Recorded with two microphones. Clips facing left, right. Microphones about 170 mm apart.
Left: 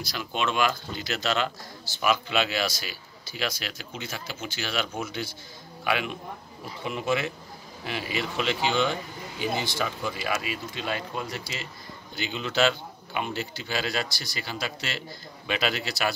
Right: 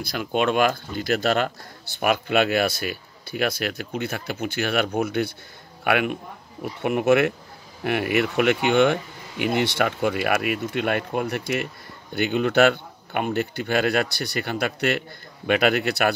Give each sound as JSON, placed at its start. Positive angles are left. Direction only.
{"t": 0.0, "sound": "speech", "side_deg": -55}